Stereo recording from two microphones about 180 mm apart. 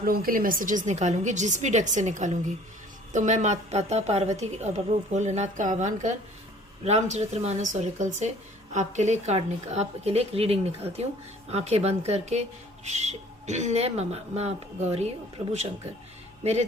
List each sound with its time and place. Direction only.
0.0 s a woman's voice: 55° right (ahead or behind); by 15.0 s 35° right (ahead or behind)
16.4 s speech: 35° right (ahead or behind)